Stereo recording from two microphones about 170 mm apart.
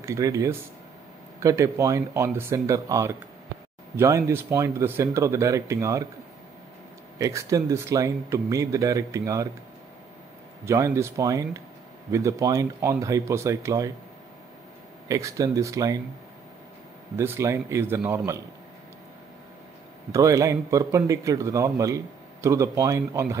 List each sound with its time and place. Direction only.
0.0 s a man's voice: 15° right (ahead or behind)
7.2 s a man's voice: 20° right (ahead or behind)
10.6 s a man's voice: 15° right (ahead or behind)
15.0 s a man's voice: 20° right (ahead or behind)
17.2 s speech: 15° right (ahead or behind)
20.1 s a man's voice: 20° right (ahead or behind)